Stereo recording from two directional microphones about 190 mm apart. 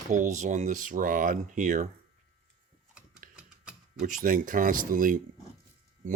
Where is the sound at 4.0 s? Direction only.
45° right (ahead or behind).